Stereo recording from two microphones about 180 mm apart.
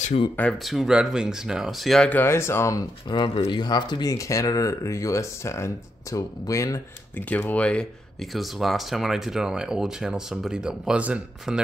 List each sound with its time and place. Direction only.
0.0 s speech: 35° left (ahead or behind)
0.4 s speech: 5° left (ahead or behind)